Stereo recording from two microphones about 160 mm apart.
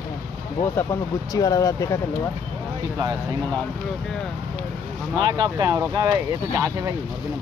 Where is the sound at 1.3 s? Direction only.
20° left (ahead or behind).